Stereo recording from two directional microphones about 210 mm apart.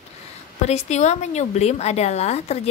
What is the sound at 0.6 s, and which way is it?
A woman's voice, 30° left (ahead or behind).